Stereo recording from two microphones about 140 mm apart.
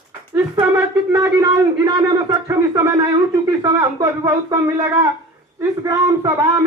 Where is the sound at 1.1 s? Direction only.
25° right (ahead or behind).